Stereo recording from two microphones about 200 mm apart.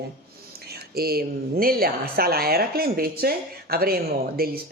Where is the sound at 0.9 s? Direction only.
50° right (ahead or behind).